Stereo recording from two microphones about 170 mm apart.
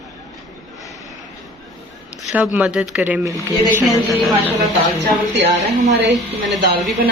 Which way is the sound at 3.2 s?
20° right (ahead or behind).